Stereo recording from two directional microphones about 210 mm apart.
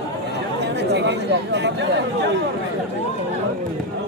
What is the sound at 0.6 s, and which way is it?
Chatter, 55° right (ahead or behind).